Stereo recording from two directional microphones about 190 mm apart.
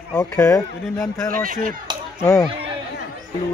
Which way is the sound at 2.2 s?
15° left (ahead or behind).